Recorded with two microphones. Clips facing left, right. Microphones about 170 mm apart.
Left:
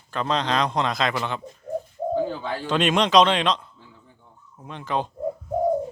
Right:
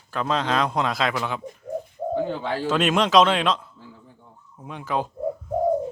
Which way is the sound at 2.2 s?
30° right (ahead or behind).